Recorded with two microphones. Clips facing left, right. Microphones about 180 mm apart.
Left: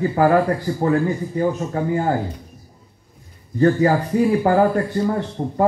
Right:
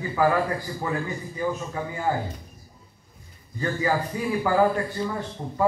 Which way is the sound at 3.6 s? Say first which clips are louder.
Left 9 dB; 45° left (ahead or behind).